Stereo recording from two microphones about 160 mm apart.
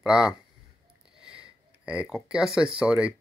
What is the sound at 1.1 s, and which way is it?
Sniff, 5° right (ahead or behind).